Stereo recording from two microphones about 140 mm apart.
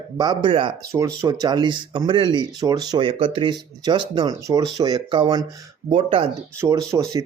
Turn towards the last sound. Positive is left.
turn(degrees=-25)  # may be behind; listen again after turning